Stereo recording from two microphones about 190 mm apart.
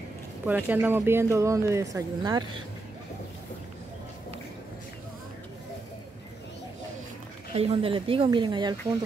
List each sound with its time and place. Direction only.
0.5 s speech: 10° right (ahead or behind)
7.5 s speech: 30° right (ahead or behind)